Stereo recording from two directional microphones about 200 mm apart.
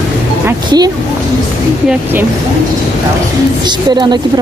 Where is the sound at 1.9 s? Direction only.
10° right (ahead or behind).